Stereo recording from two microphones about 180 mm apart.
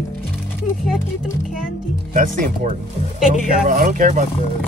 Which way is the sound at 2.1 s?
45° right (ahead or behind).